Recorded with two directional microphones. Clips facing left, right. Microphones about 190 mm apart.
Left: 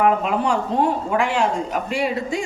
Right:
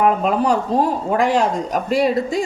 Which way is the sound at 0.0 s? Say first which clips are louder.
Right 2 dB; 40° right (ahead or behind).